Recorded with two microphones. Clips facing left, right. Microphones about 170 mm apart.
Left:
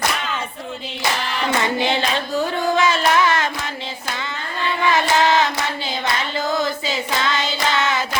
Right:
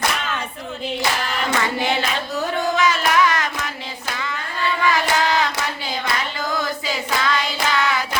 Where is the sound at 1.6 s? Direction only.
25° left (ahead or behind).